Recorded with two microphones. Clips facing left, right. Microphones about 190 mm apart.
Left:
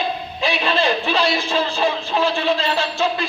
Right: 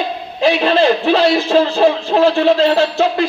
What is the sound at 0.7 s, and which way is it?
Speech, 70° right (ahead or behind).